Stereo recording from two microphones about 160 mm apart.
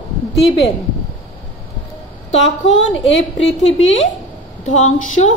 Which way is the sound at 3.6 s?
40° left (ahead or behind).